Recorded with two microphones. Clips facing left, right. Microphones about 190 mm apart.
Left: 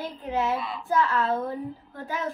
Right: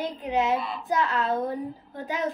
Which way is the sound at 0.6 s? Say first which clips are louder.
Right 1 dB; centre (ahead or behind).